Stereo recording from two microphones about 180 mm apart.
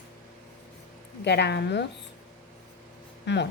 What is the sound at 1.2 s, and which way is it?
Speech, 70° left (ahead or behind).